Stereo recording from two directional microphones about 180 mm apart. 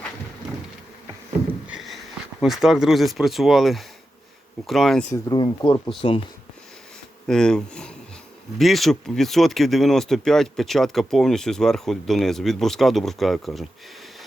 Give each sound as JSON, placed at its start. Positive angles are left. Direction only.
{"t": 1.6, "sound": "a sound", "side_deg": -5}
{"t": 2.4, "sound": "speech", "side_deg": -5}
{"t": 5.1, "sound": "speech", "side_deg": 25}
{"t": 7.3, "sound": "speech", "side_deg": 5}